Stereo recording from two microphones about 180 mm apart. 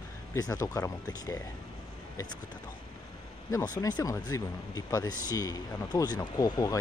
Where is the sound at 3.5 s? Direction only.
20° left (ahead or behind).